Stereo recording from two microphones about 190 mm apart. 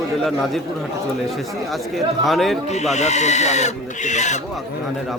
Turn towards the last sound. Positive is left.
turn(degrees=40)  # may be behind; listen again after turning